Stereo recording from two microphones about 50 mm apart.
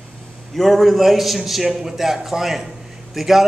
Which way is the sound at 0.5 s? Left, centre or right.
Centre.